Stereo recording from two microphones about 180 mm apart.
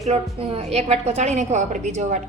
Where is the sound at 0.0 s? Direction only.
35° right (ahead or behind).